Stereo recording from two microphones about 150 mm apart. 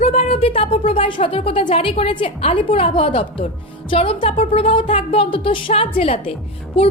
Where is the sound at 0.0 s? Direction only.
45° left (ahead or behind).